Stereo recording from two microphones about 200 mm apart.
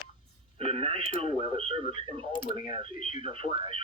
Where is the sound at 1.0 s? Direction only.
45° left (ahead or behind).